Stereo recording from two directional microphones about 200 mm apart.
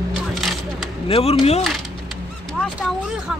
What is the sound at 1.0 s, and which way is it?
Speech, 30° left (ahead or behind).